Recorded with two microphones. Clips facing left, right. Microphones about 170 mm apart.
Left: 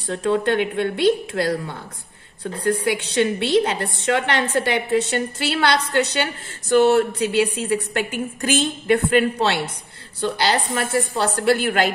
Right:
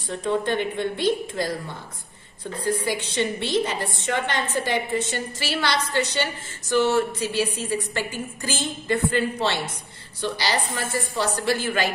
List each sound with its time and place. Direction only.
0.0 s a woman's voice: 70° left (ahead or behind)